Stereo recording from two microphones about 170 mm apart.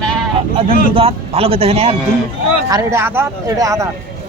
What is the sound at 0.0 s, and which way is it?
Sheep, 5° left (ahead or behind).